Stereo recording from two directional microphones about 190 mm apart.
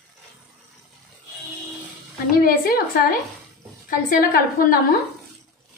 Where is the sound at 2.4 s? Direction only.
50° left (ahead or behind).